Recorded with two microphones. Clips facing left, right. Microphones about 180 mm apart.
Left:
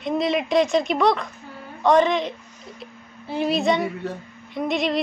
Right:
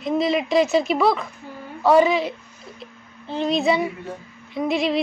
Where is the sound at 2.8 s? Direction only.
5° left (ahead or behind).